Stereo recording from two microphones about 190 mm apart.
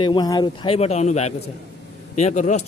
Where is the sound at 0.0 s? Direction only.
25° left (ahead or behind).